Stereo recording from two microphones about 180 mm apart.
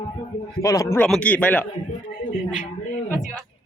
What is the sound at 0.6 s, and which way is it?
Speech, 15° left (ahead or behind).